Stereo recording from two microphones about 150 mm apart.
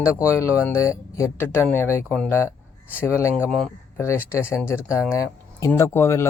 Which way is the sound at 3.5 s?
5° left (ahead or behind).